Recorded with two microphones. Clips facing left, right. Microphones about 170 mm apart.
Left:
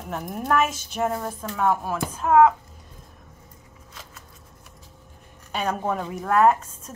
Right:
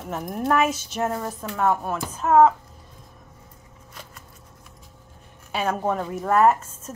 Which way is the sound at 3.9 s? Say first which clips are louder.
Right 2 dB; centre (ahead or behind).